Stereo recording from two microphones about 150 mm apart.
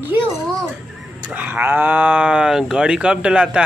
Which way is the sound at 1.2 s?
10° right (ahead or behind).